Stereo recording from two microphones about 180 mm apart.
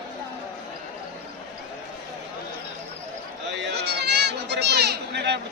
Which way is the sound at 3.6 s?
65° right (ahead or behind).